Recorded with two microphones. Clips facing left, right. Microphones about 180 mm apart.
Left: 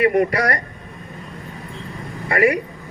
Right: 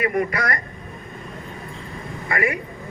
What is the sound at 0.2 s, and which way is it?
Speech, 35° left (ahead or behind).